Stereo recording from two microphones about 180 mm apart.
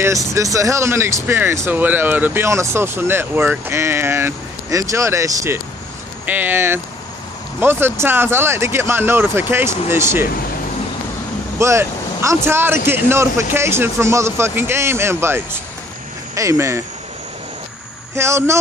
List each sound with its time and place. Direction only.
0.0 s speech: 15° right (ahead or behind)
11.5 s speech: 15° right (ahead or behind)
18.1 s speech: 15° right (ahead or behind)